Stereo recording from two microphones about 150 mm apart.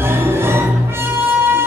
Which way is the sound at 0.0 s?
15° right (ahead or behind).